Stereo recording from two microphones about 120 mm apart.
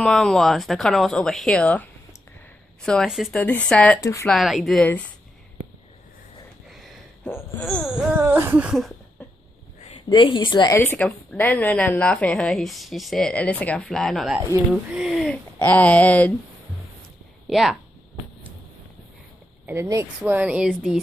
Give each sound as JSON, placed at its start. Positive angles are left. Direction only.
{"t": 0.0, "sound": "speech", "side_deg": 5}
{"t": 3.3, "sound": "a woman's voice", "side_deg": 15}
{"t": 4.0, "sound": "speech", "side_deg": 25}
{"t": 4.3, "sound": "speech", "side_deg": 0}
{"t": 7.2, "sound": "speech", "side_deg": 20}
{"t": 8.2, "sound": "speech", "side_deg": -20}
{"t": 9.8, "sound": "a sound", "side_deg": 60}
{"t": 10.0, "sound": "a woman's voice", "side_deg": 40}
{"t": 10.7, "sound": "a woman's voice", "side_deg": 20}
{"t": 15.6, "sound": "a woman's voice", "side_deg": 15}
{"t": 17.5, "sound": "speech", "side_deg": 0}
{"t": 19.6, "sound": "a woman's voice", "side_deg": -20}
{"t": 20.3, "sound": "speech", "side_deg": -10}